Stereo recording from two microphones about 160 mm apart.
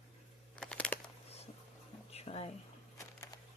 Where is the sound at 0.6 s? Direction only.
5° left (ahead or behind).